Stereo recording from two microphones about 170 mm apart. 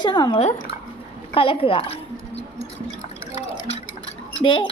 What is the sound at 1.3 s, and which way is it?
Speech, 35° left (ahead or behind).